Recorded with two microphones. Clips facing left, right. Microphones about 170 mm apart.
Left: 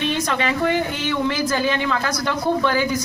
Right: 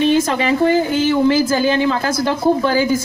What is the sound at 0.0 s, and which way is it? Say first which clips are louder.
Speech: right 7 dB; 30° right (ahead or behind).